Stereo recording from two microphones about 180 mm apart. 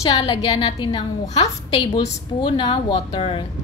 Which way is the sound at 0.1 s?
30° left (ahead or behind).